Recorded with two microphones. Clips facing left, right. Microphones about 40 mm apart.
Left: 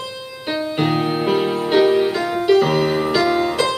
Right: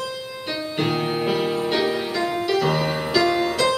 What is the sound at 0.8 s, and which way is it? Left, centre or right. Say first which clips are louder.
Music: left 3 dB; centre.